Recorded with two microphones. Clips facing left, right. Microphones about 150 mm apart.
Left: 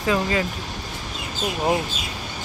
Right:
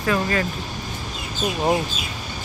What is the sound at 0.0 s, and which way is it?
Speech, 15° left (ahead or behind).